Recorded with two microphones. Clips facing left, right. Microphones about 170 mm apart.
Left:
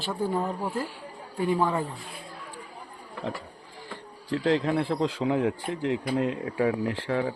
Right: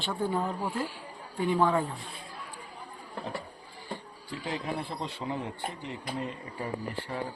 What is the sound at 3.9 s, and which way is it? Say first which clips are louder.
Speech: left 7 dB; 90° left.